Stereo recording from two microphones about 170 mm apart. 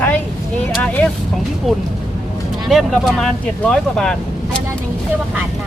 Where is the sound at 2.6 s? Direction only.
Centre (ahead or behind).